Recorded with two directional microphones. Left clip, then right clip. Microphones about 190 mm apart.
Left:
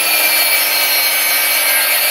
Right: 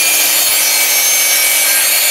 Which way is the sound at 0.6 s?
10° right (ahead or behind).